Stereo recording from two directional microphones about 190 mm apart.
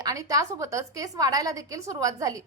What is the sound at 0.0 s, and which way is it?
A woman's voice, 20° right (ahead or behind).